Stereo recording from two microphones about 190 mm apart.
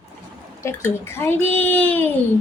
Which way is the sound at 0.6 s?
15° left (ahead or behind).